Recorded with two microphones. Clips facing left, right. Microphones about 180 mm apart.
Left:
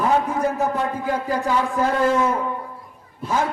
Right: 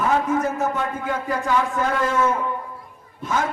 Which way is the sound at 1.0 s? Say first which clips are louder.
Left 2 dB; 35° left (ahead or behind).